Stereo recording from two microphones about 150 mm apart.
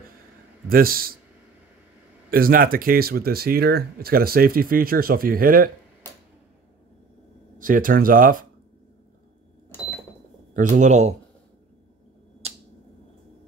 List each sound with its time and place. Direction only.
0.7 s speech: 75° right (ahead or behind)
2.3 s speech: 75° right (ahead or behind)
7.5 s speech: 65° right (ahead or behind)
10.5 s speech: 60° right (ahead or behind)
12.4 s finger snapping: 45° right (ahead or behind)